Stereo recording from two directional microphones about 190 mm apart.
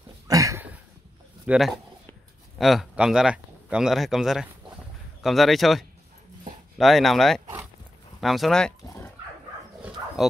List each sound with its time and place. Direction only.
0.3 s a sound: 15° right (ahead or behind)
1.4 s speech: 5° right (ahead or behind)
8.8 s dog: 15° left (ahead or behind)
9.8 s bow-wow: 5° right (ahead or behind)